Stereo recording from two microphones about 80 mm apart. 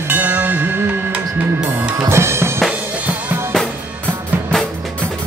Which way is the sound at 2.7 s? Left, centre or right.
Centre.